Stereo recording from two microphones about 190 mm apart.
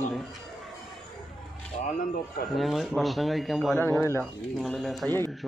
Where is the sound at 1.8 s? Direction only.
45° left (ahead or behind).